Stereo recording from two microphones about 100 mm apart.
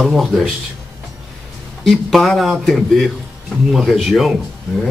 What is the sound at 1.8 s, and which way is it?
Speech, 5° left (ahead or behind).